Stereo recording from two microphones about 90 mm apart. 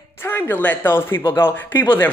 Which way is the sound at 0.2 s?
25° left (ahead or behind).